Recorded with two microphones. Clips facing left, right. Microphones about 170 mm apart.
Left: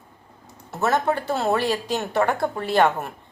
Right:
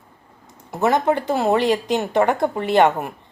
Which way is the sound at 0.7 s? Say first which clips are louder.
Right 4 dB; 15° right (ahead or behind).